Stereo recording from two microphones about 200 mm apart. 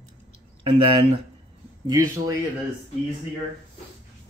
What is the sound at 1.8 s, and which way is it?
Speech, 15° right (ahead or behind).